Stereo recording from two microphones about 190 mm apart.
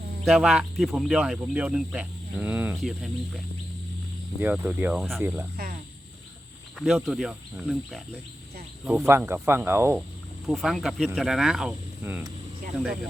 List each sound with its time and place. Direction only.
0.3 s speech: centre (ahead or behind)
4.4 s speech: 5° right (ahead or behind)
5.6 s cricket: 55° right (ahead or behind)
6.7 s speech: centre (ahead or behind)
10.4 s speech: centre (ahead or behind)